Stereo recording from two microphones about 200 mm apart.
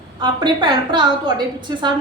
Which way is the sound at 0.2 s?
20° right (ahead or behind).